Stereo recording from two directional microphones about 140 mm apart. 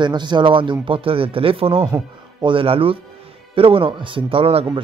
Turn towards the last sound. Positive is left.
turn(degrees=-40)  # may be behind; listen again after turning